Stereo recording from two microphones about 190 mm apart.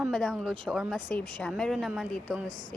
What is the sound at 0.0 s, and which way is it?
A woman's voice, centre (ahead or behind).